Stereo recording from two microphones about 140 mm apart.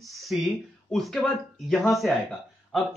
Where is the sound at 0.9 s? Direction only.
Centre (ahead or behind).